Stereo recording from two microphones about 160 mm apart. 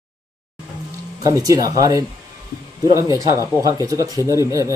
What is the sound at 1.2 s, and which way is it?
Speech, 20° right (ahead or behind).